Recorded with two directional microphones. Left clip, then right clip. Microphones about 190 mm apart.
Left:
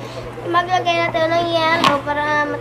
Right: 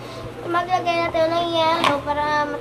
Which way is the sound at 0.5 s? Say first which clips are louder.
Left 4 dB; centre (ahead or behind).